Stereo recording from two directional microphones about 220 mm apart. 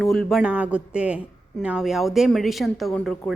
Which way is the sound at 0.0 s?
Centre (ahead or behind).